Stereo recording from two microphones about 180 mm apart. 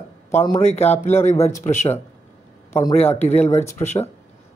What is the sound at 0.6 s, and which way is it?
Speech, 35° left (ahead or behind).